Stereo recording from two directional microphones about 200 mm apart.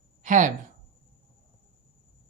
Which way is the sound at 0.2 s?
40° right (ahead or behind).